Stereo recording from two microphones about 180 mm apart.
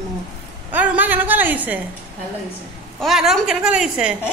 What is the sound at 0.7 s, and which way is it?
A woman's voice, 10° right (ahead or behind).